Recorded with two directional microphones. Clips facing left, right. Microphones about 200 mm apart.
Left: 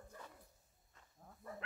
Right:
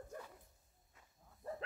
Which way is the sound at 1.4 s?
30° right (ahead or behind).